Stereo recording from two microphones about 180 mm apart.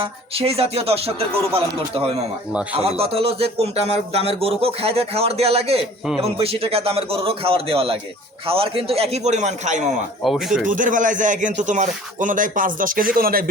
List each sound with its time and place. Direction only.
0.0 s a man's voice: 30° right (ahead or behind)
2.7 s a man's voice: 35° right (ahead or behind)
10.2 s speech: centre (ahead or behind)
10.7 s a man's voice: 45° right (ahead or behind)